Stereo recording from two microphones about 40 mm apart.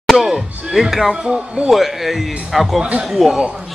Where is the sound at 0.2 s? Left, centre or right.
Centre.